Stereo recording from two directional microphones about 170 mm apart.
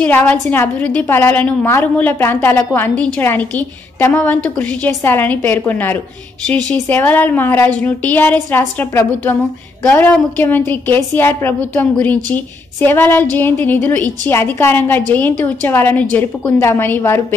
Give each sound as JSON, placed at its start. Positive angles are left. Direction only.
{"t": 0.0, "sound": "a woman's voice", "side_deg": 10}